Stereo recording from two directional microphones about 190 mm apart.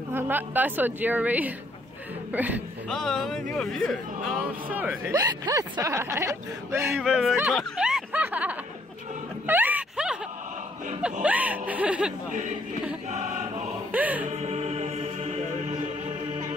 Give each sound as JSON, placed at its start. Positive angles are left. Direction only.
{"t": 0.1, "sound": "speech", "side_deg": -10}
{"t": 2.9, "sound": "speech", "side_deg": 0}
{"t": 7.0, "sound": "speech", "side_deg": 0}
{"t": 7.5, "sound": "snicker", "side_deg": -5}
{"t": 9.5, "sound": "a sound", "side_deg": -10}
{"t": 11.2, "sound": "speech", "side_deg": -10}
{"t": 13.9, "sound": "music", "side_deg": -10}
{"t": 14.2, "sound": "music", "side_deg": -35}